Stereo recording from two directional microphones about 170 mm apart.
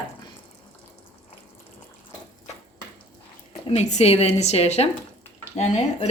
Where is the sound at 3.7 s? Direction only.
40° left (ahead or behind).